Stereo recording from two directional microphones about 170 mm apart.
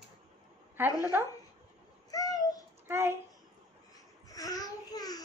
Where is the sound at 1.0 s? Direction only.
15° right (ahead or behind).